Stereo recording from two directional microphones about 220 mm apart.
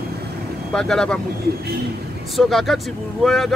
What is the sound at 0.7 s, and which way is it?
Speech, 5° left (ahead or behind).